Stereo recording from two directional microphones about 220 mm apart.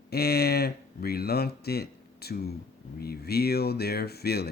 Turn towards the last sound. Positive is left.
turn(degrees=45)  # may be behind; listen again after turning